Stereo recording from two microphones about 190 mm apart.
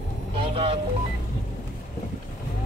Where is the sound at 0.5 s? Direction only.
30° right (ahead or behind).